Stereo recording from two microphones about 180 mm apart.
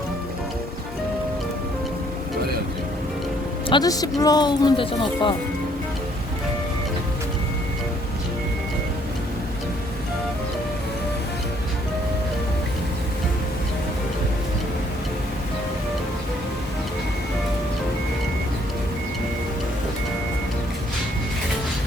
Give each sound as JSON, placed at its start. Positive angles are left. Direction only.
{"t": 3.7, "sound": "speech", "side_deg": 20}